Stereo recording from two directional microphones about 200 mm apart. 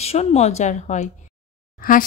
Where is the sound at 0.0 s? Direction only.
30° left (ahead or behind).